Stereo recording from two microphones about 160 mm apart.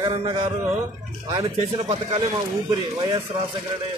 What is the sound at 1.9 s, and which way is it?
Speech, 35° right (ahead or behind).